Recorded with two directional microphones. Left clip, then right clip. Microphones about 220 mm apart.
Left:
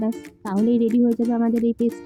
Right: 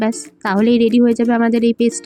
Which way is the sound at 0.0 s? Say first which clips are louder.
Right 8 dB; 40° right (ahead or behind).